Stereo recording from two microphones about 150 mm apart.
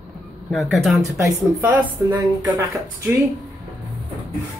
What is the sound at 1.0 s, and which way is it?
Speech, 15° right (ahead or behind).